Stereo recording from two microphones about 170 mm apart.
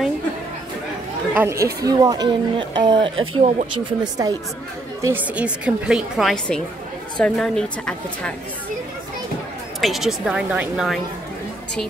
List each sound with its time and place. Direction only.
1.3 s speech: 15° right (ahead or behind)
5.0 s a woman's voice: 10° right (ahead or behind)
9.8 s a woman's voice: centre (ahead or behind)